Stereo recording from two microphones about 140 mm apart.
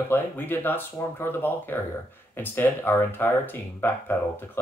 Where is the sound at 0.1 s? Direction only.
15° left (ahead or behind).